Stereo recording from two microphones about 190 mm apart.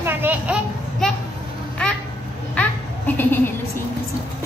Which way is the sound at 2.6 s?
10° left (ahead or behind).